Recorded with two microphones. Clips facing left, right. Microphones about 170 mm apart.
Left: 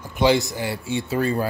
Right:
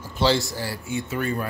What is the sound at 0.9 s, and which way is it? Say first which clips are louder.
Speech: left 4 dB; 30° left (ahead or behind).